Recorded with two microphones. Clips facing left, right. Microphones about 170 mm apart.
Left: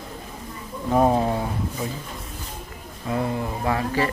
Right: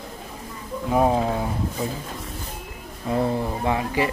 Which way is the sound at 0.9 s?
5° right (ahead or behind).